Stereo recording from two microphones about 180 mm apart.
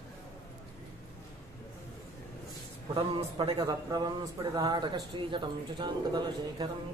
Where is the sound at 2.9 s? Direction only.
25° right (ahead or behind).